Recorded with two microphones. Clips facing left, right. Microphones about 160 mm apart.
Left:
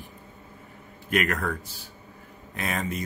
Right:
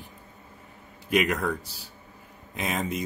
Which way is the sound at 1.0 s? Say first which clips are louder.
Right 2 dB; 15° right (ahead or behind).